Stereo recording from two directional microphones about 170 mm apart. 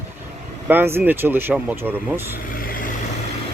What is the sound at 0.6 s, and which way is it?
Speech, 10° right (ahead or behind).